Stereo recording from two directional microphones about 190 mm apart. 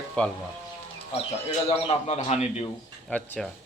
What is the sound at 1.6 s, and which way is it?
Speech, 35° left (ahead or behind).